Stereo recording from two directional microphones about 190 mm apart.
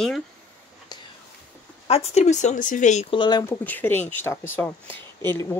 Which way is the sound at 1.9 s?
35° left (ahead or behind).